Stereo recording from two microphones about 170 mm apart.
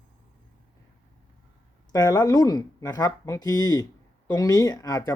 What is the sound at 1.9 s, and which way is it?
A man's voice, 20° left (ahead or behind).